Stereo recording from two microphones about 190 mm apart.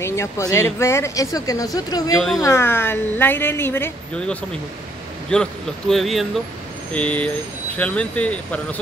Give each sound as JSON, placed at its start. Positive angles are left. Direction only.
{"t": 0.0, "sound": "speech", "side_deg": 15}
{"t": 2.1, "sound": "speech", "side_deg": 0}
{"t": 2.4, "sound": "speech", "side_deg": 15}